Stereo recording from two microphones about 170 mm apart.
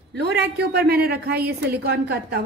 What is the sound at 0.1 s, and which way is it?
A woman's voice, 75° right (ahead or behind).